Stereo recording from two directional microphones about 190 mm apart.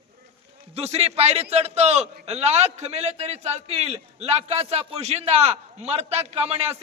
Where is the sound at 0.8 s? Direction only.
35° right (ahead or behind).